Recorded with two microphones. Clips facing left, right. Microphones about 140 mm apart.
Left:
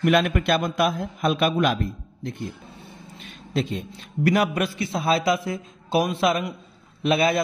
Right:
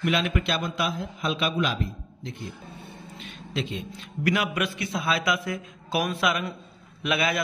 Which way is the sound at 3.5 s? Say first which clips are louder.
Left 5 dB; 40° left (ahead or behind).